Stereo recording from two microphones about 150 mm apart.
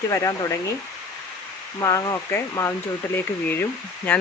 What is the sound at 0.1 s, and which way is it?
Speech, 20° left (ahead or behind).